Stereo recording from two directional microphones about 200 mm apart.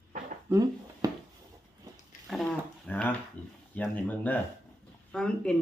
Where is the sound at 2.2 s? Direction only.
Centre (ahead or behind).